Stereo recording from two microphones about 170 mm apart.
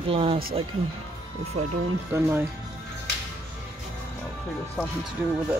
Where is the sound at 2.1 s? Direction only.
10° right (ahead or behind).